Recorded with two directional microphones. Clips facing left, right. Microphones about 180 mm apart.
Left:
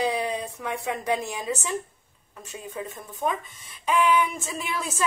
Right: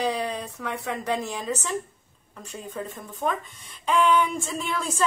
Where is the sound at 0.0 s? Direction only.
15° left (ahead or behind).